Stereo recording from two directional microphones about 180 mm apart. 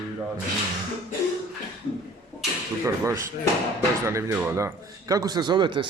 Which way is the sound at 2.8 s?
15° right (ahead or behind).